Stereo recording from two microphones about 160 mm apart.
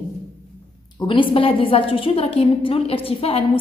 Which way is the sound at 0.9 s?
30° left (ahead or behind).